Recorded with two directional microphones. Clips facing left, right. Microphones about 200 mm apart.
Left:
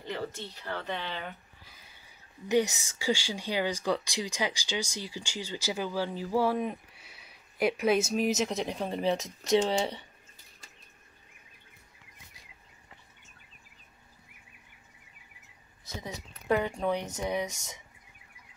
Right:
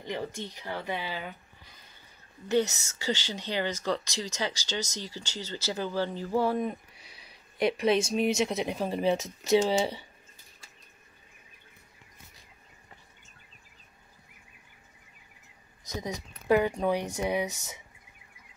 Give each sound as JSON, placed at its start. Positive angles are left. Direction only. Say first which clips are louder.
{"t": 0.0, "sound": "speech", "louder": "right 2 dB", "side_deg": -15}
{"t": 2.4, "sound": "speech", "louder": "even", "side_deg": 15}
{"t": 15.8, "sound": "a sound", "louder": "right 5 dB", "side_deg": -15}
{"t": 16.7, "sound": "speech", "louder": "right 2 dB", "side_deg": -10}